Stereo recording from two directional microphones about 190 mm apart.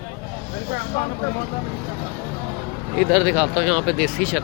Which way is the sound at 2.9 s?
5° right (ahead or behind).